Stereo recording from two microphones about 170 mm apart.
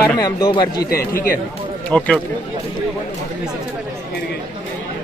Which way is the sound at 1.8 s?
5° left (ahead or behind).